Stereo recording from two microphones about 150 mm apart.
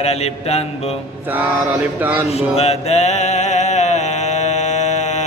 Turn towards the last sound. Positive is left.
turn(degrees=50)  # may be behind; listen again after turning